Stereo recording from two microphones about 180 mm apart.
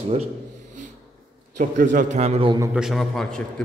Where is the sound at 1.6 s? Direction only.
45° right (ahead or behind).